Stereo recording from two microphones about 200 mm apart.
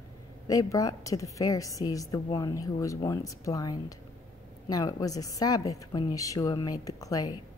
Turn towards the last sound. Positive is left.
turn(degrees=15)  # may be behind; listen again after turning